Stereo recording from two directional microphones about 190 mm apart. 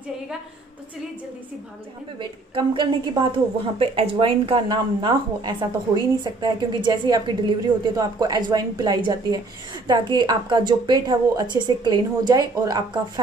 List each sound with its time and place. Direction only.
2.1 s a woman's voice: 25° right (ahead or behind)